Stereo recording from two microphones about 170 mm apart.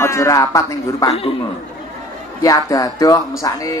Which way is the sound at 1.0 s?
35° left (ahead or behind).